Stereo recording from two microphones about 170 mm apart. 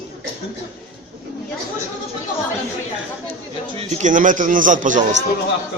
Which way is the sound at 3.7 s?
50° right (ahead or behind).